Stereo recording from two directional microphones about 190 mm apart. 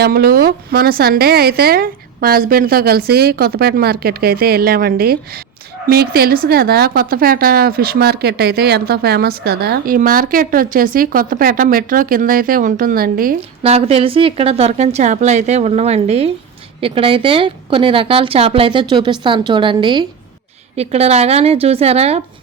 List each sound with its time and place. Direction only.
0.0 s a woman's voice: 55° right (ahead or behind)
13.6 s a woman's voice: 30° right (ahead or behind)